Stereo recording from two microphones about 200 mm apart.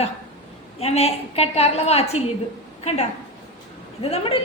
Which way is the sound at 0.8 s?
30° left (ahead or behind).